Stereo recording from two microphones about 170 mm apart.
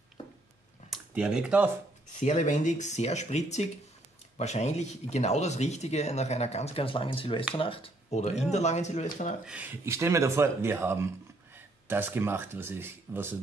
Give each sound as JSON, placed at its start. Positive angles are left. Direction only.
{"t": 0.8, "sound": "speech", "side_deg": -5}
{"t": 2.1, "sound": "speech", "side_deg": 45}
{"t": 9.4, "sound": "speech", "side_deg": -10}